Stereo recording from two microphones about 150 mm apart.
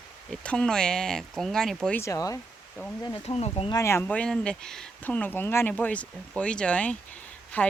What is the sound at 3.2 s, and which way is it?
Speech, 45° left (ahead or behind).